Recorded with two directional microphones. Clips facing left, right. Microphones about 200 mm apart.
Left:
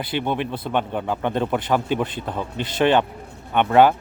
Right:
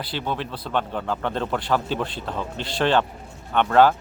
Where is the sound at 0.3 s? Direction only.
20° left (ahead or behind).